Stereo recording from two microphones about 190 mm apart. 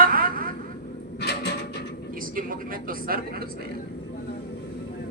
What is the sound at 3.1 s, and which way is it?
Speech, 50° right (ahead or behind).